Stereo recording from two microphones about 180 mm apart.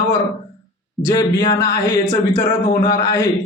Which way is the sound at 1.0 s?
20° left (ahead or behind).